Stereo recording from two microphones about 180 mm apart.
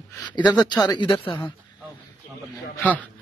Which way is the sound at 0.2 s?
25° left (ahead or behind).